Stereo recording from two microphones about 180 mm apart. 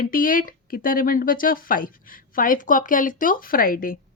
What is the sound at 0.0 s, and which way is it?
Speech, 50° left (ahead or behind).